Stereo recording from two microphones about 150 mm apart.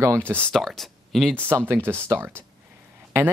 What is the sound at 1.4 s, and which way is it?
Speech, 15° right (ahead or behind).